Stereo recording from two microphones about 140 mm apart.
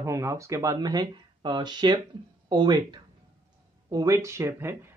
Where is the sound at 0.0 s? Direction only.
20° right (ahead or behind).